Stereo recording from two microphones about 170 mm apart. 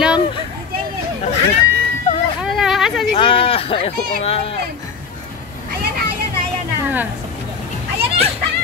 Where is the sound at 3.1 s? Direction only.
30° left (ahead or behind).